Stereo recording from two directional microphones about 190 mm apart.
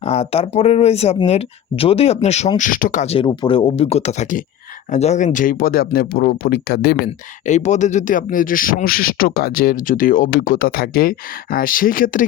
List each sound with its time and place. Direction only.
0.0 s speech: 35° left (ahead or behind); by 7.1 s 55° left (ahead or behind)
7.4 s speech: 40° left (ahead or behind)